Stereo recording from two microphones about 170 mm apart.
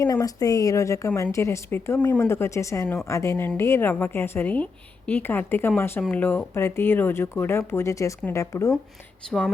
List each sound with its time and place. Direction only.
0.0 s a woman's voice: 20° left (ahead or behind)